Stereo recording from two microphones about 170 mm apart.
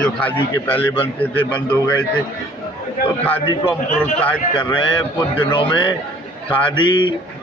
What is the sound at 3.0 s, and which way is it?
Speech, 60° left (ahead or behind).